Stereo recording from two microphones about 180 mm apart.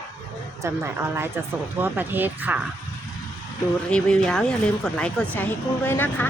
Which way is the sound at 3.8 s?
5° left (ahead or behind).